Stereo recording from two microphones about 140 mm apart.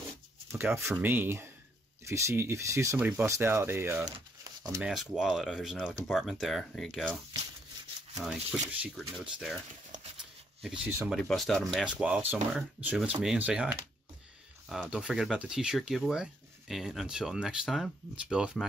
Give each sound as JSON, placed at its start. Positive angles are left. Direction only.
{"t": 0.5, "sound": "speech", "side_deg": -15}
{"t": 3.0, "sound": "speech", "side_deg": -10}
{"t": 3.3, "sound": "speech", "side_deg": -20}
{"t": 4.8, "sound": "speech", "side_deg": -5}
{"t": 8.2, "sound": "speech", "side_deg": -5}
{"t": 10.6, "sound": "speech", "side_deg": -5}
{"t": 11.2, "sound": "speech", "side_deg": 0}